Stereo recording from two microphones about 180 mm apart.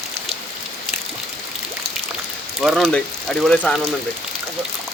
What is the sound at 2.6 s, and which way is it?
Speech, centre (ahead or behind).